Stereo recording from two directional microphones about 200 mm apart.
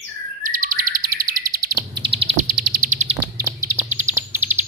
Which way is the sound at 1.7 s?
25° right (ahead or behind).